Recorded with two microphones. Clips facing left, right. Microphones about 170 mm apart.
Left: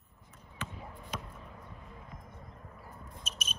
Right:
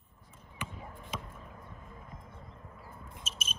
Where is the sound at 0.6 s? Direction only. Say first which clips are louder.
Even; 15° right (ahead or behind).